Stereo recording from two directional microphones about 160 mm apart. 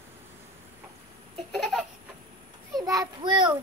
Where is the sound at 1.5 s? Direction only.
Centre (ahead or behind).